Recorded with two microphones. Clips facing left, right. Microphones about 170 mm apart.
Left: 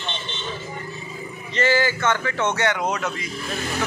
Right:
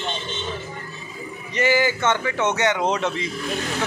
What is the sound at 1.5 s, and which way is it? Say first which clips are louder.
A man's voice: right 1 dB; 15° right (ahead or behind).